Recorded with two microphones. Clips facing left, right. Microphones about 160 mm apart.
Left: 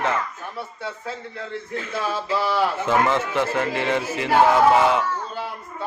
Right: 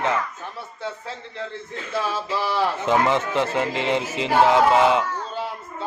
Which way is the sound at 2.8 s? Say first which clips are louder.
Even; 20° right (ahead or behind).